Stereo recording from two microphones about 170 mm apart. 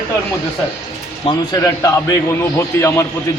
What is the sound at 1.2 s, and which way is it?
A man's voice, 20° left (ahead or behind).